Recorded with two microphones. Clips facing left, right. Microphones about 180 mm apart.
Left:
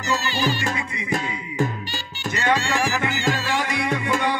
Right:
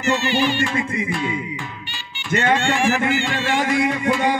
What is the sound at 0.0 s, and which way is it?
Music, 35° left (ahead or behind).